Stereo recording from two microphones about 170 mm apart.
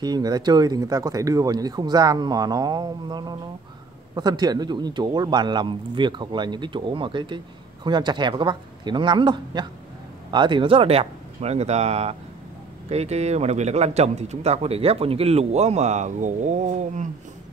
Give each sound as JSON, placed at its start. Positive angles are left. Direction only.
{"t": 0.0, "sound": "a man's voice", "side_deg": -25}